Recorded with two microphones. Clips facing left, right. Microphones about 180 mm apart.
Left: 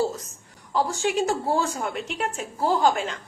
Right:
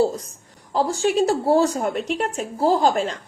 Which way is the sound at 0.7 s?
35° right (ahead or behind).